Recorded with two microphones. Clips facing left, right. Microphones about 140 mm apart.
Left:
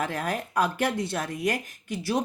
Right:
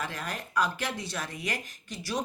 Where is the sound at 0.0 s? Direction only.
50° left (ahead or behind).